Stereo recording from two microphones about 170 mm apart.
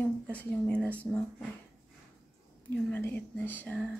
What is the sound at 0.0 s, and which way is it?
Speech, 10° left (ahead or behind).